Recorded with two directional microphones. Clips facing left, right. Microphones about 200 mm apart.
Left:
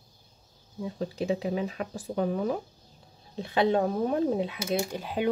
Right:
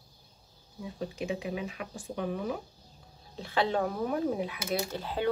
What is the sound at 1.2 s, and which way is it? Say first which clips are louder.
Speech: left 6 dB; 35° left (ahead or behind).